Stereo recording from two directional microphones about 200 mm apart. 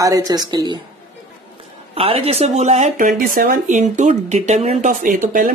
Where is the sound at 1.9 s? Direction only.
30° right (ahead or behind).